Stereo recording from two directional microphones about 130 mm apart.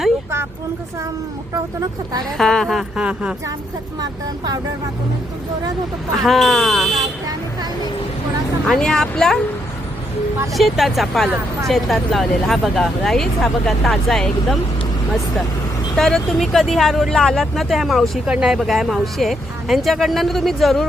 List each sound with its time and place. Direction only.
1.5 s speech: 30° right (ahead or behind)
2.4 s speech: 5° left (ahead or behind)
4.0 s speech: 30° right (ahead or behind)
6.2 s speech: centre (ahead or behind)
8.6 s speech: 5° left (ahead or behind)
10.5 s speech: centre (ahead or behind)
16.0 s speech: 5° left (ahead or behind)